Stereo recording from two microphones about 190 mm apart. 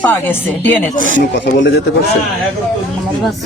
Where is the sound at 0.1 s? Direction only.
10° left (ahead or behind).